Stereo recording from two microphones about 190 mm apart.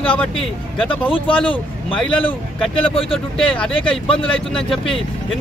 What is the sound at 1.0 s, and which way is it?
Speech, 25° left (ahead or behind).